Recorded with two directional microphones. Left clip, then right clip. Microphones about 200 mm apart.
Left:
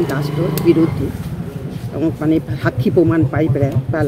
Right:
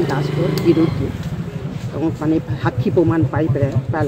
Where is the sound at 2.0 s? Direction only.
15° left (ahead or behind).